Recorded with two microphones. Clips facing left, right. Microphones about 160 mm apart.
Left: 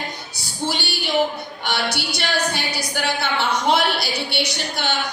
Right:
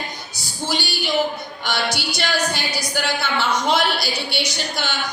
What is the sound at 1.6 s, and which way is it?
A woman's voice, 60° left (ahead or behind).